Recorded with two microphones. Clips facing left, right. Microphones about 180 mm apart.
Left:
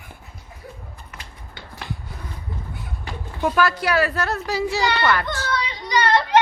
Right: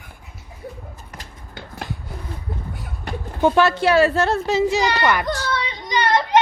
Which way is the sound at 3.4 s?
25° right (ahead or behind).